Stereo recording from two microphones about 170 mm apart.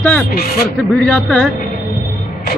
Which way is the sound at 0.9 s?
10° left (ahead or behind).